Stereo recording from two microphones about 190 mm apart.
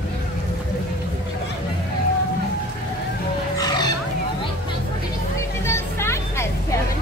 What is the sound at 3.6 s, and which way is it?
Music, 20° left (ahead or behind).